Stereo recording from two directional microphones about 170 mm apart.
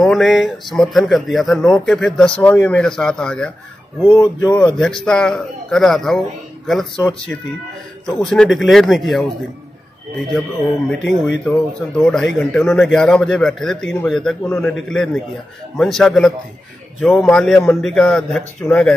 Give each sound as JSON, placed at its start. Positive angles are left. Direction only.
{"t": 0.0, "sound": "speech", "side_deg": 0}
{"t": 4.2, "sound": "speech", "side_deg": 20}
{"t": 4.6, "sound": "speech", "side_deg": 5}
{"t": 10.9, "sound": "speech", "side_deg": 5}